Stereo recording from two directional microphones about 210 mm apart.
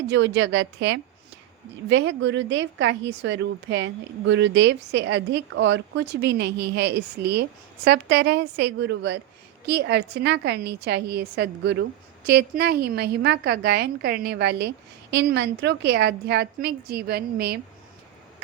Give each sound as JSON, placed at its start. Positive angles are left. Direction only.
{"t": 0.1, "sound": "a woman's voice", "side_deg": -60}